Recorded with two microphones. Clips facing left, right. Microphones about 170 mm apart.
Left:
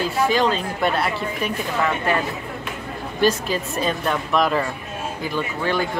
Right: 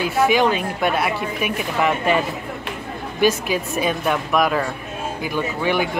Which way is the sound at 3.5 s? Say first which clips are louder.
Right 2 dB; 10° right (ahead or behind).